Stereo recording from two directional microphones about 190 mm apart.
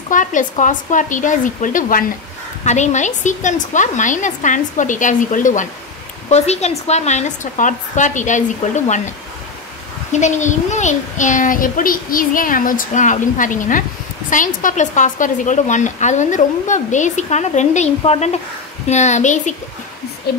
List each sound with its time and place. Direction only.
0.1 s a child's voice: 40° left (ahead or behind)
10.1 s a child's voice: 40° left (ahead or behind)
20.3 s speech: 55° left (ahead or behind)